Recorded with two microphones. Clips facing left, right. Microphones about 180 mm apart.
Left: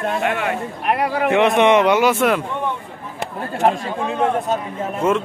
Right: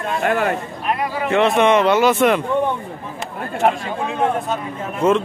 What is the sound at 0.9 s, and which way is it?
Speech, 65° left (ahead or behind).